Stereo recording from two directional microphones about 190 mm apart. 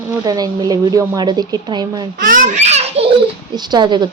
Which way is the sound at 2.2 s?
45° right (ahead or behind).